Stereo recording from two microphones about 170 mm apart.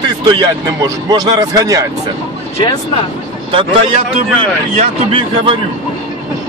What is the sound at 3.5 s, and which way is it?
Speech, 30° right (ahead or behind).